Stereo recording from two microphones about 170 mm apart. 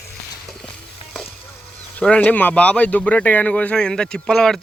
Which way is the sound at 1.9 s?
10° left (ahead or behind).